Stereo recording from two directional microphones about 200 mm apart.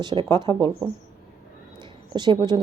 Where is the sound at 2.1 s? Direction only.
20° right (ahead or behind).